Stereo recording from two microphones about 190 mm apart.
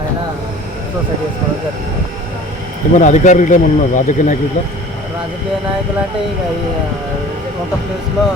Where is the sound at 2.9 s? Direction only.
40° left (ahead or behind).